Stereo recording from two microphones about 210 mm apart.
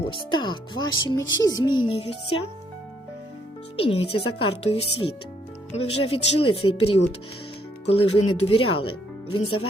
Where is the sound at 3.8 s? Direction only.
25° left (ahead or behind).